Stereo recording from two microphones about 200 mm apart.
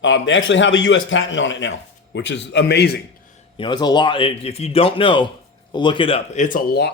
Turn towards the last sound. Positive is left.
turn(degrees=50)  # may be behind; listen again after turning